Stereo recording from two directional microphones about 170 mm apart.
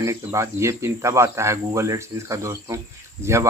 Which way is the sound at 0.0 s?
15° right (ahead or behind).